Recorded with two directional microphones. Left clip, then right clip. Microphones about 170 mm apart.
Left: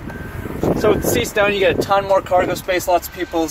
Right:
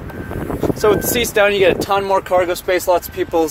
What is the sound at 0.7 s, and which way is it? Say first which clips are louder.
Speech: right 1 dB; 75° right (ahead or behind).